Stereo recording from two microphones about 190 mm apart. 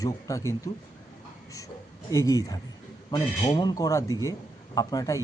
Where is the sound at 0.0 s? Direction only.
15° left (ahead or behind).